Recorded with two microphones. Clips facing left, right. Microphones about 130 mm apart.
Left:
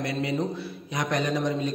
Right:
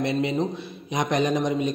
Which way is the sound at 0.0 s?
20° right (ahead or behind).